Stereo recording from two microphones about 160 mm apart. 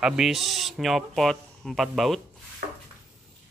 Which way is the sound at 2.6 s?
70° right (ahead or behind).